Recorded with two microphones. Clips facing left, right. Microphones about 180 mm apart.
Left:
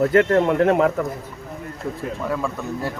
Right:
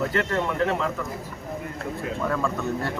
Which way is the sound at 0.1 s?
55° left (ahead or behind).